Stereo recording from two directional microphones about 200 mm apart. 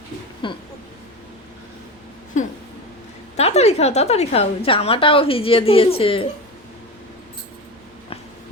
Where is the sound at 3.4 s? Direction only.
30° left (ahead or behind).